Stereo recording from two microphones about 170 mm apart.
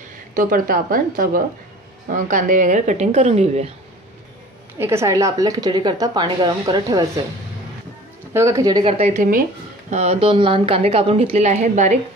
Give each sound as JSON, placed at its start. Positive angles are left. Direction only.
{"t": 0.3, "sound": "a woman's voice", "side_deg": -55}
{"t": 4.7, "sound": "speech", "side_deg": -15}
{"t": 8.3, "sound": "speech", "side_deg": -15}
{"t": 8.8, "sound": "a woman's voice", "side_deg": -35}